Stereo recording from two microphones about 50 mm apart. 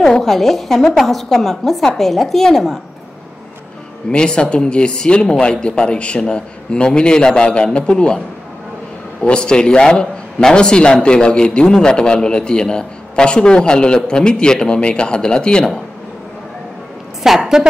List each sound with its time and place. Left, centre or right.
0.0 s a woman's voice: centre
4.1 s a man's voice: centre
9.2 s a man's voice: centre
17.2 s a woman's voice: centre